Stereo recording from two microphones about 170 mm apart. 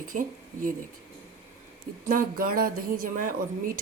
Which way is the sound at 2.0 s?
55° right (ahead or behind).